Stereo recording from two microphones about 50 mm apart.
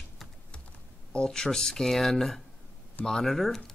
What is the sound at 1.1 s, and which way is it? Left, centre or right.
Speech, centre.